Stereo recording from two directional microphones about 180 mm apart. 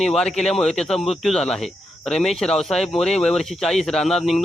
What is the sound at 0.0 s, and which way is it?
Speech, 5° left (ahead or behind).